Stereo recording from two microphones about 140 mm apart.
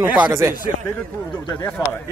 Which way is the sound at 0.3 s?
20° right (ahead or behind).